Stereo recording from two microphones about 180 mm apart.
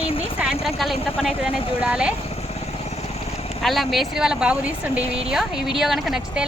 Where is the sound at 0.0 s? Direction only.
30° left (ahead or behind).